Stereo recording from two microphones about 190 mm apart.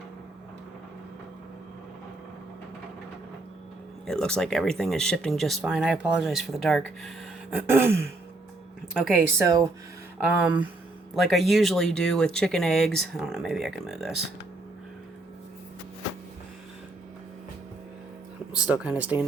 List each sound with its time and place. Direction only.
4.0 s speech: 5° left (ahead or behind)
7.5 s a woman's voice: 10° right (ahead or behind)
18.5 s a woman's voice: 5° right (ahead or behind)